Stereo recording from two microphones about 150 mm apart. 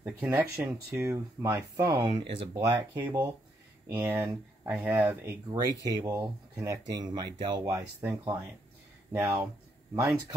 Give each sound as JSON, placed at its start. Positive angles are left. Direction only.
{"t": 0.0, "sound": "speech", "side_deg": -10}
{"t": 1.1, "sound": "speech", "side_deg": -20}
{"t": 2.5, "sound": "speech", "side_deg": -15}
{"t": 9.9, "sound": "speech", "side_deg": -25}